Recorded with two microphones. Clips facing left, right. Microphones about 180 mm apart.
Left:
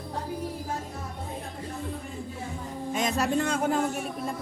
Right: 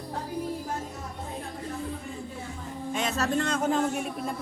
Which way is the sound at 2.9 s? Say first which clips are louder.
Left 1 dB; 10° left (ahead or behind).